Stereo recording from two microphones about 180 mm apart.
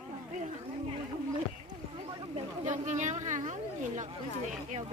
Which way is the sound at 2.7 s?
40° right (ahead or behind).